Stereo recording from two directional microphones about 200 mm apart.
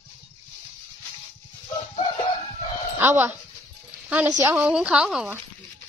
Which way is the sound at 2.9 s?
10° right (ahead or behind).